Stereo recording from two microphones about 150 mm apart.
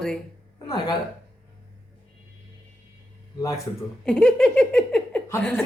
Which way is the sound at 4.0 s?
5° left (ahead or behind).